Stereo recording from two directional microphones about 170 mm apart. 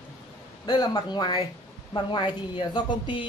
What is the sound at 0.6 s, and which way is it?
Speech, 25° left (ahead or behind).